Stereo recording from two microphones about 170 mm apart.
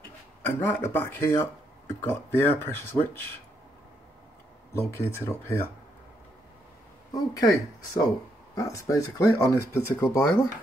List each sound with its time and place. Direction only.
0.7 s speech: 15° left (ahead or behind)
4.7 s speech: 15° left (ahead or behind)
7.1 s speech: 20° left (ahead or behind)